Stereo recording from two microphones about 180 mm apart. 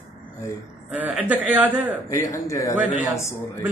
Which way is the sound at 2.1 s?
15° left (ahead or behind).